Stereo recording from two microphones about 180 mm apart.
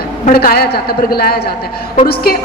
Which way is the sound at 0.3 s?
60° left (ahead or behind).